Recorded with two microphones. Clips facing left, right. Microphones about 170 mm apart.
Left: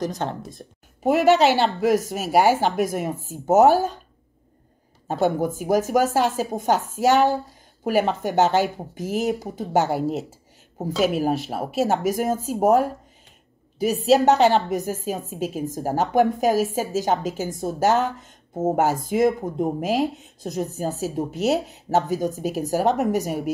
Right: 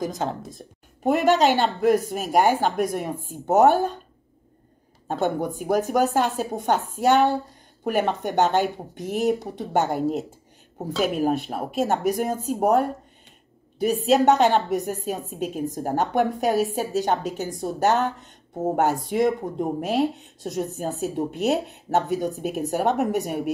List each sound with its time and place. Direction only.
0.1 s speech: centre (ahead or behind)
5.0 s speech: 5° left (ahead or behind)